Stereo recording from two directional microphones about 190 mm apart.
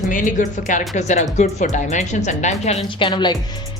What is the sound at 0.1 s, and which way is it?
Speech, 40° left (ahead or behind).